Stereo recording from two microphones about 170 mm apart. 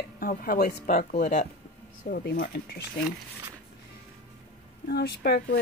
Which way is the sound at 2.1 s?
60° left (ahead or behind).